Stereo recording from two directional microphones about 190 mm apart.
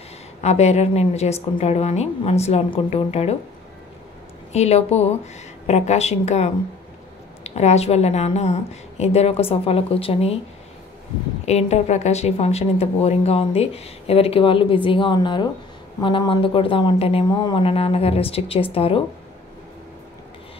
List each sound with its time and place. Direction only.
0.4 s speech: 35° left (ahead or behind)
4.5 s speech: 35° left (ahead or behind)
11.4 s speech: 35° left (ahead or behind)